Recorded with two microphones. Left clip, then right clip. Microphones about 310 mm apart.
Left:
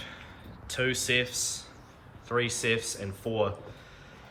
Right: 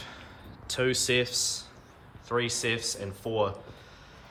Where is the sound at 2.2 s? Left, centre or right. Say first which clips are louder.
Left 1 dB; centre.